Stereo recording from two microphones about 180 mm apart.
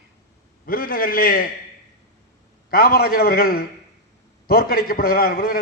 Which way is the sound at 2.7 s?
60° left (ahead or behind).